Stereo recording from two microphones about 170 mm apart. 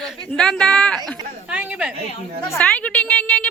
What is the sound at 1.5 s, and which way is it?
Speech, 5° right (ahead or behind).